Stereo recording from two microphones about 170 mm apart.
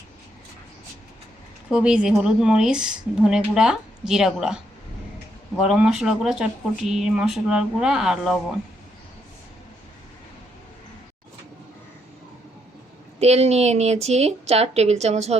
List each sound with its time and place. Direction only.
1.7 s a woman's voice: 5° right (ahead or behind)
13.1 s a woman's voice: 40° right (ahead or behind)